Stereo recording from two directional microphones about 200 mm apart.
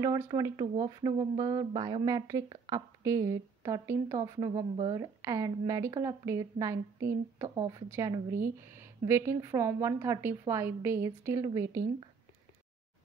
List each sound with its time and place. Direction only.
0.0 s speech: 20° right (ahead or behind)